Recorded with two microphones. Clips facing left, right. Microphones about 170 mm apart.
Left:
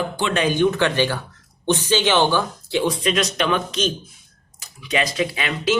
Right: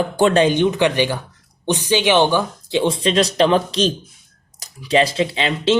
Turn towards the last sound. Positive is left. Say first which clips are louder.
# right 4 dB
turn(degrees=-25)  # may be behind; listen again after turning